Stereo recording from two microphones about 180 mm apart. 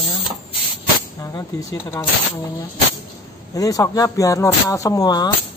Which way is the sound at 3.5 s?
20° left (ahead or behind).